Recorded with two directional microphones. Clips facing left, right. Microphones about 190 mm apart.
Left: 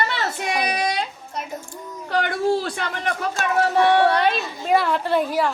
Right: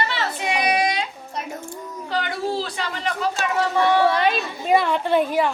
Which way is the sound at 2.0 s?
55° left (ahead or behind).